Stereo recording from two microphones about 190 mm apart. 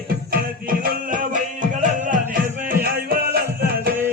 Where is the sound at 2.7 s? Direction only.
50° right (ahead or behind).